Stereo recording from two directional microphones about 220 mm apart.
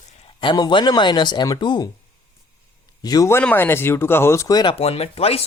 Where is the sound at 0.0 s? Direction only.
20° left (ahead or behind).